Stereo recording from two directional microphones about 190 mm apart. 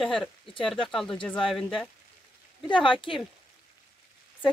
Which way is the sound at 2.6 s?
25° left (ahead or behind).